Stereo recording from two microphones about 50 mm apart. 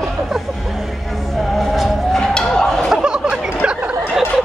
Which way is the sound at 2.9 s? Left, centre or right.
Centre.